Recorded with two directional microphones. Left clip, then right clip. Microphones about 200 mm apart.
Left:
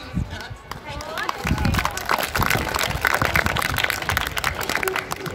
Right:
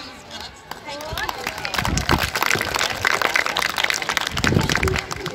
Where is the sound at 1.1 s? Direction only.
50° right (ahead or behind).